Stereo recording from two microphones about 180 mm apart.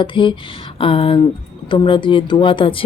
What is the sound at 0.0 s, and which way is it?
Speech, 25° left (ahead or behind).